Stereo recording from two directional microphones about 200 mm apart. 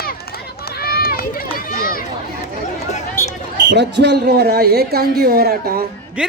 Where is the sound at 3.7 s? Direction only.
60° right (ahead or behind).